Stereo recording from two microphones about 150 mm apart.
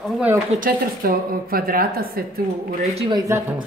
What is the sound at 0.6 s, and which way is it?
A woman's voice, 75° right (ahead or behind).